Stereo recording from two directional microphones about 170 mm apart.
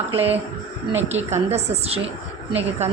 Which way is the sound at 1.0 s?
40° right (ahead or behind).